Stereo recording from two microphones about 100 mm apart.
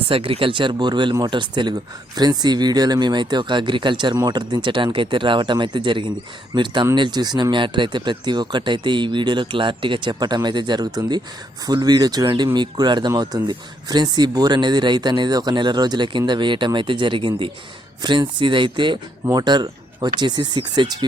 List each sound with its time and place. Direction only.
0.1 s speech: 65° right (ahead or behind); by 21.0 s 45° right (ahead or behind)